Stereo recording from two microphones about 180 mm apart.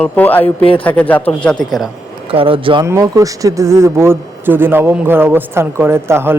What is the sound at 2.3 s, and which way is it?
Speech, 30° right (ahead or behind).